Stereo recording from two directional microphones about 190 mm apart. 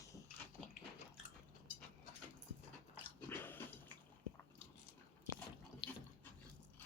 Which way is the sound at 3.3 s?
10° left (ahead or behind).